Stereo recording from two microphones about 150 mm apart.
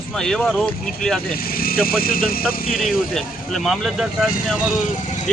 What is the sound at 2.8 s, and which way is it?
Speech, centre (ahead or behind).